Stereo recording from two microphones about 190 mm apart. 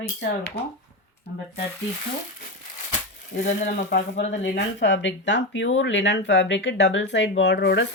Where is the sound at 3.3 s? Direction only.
45° left (ahead or behind).